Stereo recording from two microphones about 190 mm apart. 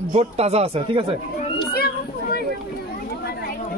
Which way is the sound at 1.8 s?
55° left (ahead or behind).